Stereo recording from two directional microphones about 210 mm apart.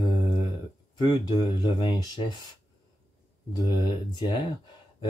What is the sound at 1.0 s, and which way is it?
Speech, 20° left (ahead or behind).